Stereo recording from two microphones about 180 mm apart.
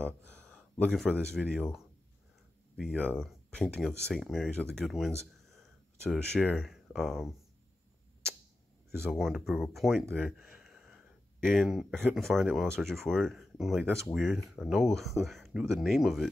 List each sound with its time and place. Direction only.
0.0 s speech: 5° left (ahead or behind)
3.1 s speech: 5° left (ahead or behind)
9.1 s speech: centre (ahead or behind)
10.1 s a sound: centre (ahead or behind)
11.4 s speech: centre (ahead or behind)